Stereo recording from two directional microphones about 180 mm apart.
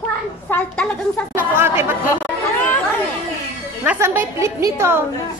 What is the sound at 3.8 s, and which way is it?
A woman's voice, 15° right (ahead or behind).